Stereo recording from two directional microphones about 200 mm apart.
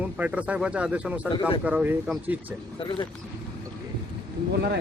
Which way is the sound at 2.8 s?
25° left (ahead or behind).